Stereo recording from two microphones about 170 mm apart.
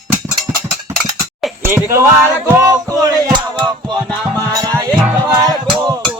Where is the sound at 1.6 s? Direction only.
15° right (ahead or behind).